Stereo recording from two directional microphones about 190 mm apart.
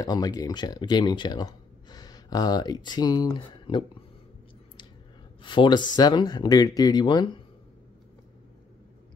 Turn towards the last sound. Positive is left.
turn(degrees=20)  # may be behind; listen again after turning